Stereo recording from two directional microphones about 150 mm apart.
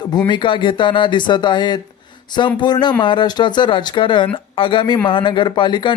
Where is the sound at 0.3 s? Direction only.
35° left (ahead or behind).